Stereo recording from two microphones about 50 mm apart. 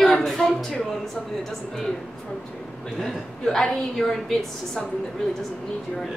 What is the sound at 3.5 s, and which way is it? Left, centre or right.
Speech, centre.